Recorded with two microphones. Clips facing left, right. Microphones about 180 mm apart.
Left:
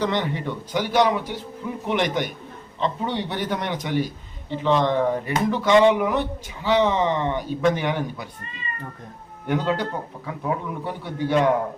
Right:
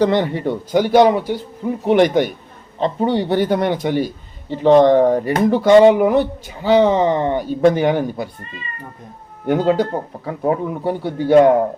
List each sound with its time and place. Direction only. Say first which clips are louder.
0.0 s speech: right 8 dB; 35° right (ahead or behind)
9.5 s a man's voice: right 8 dB; 40° right (ahead or behind)